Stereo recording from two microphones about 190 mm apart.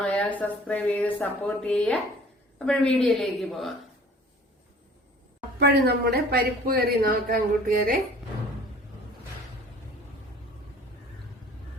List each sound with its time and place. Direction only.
0.0 s speech: 5° left (ahead or behind)
5.5 s speech: 55° right (ahead or behind)